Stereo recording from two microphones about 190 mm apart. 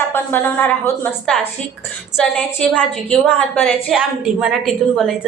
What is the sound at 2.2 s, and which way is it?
A woman's voice, 5° left (ahead or behind).